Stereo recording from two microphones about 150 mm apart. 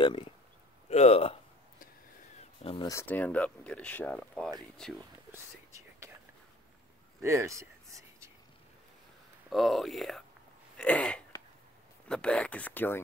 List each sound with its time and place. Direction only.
0.0 s speech: 35° left (ahead or behind)
2.6 s speech: 35° left (ahead or behind)
2.9 s speech: 15° left (ahead or behind)
5.3 s whispering: 20° right (ahead or behind)
7.2 s a sound: 20° right (ahead or behind)
9.5 s speech: centre (ahead or behind)
10.8 s a sound: 5° left (ahead or behind)
12.1 s speech: 5° left (ahead or behind)